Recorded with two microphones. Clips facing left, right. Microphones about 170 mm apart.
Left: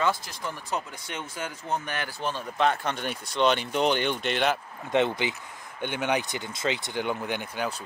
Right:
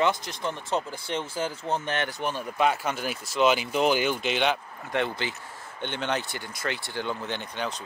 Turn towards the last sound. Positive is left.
turn(degrees=10)  # may be behind; listen again after turning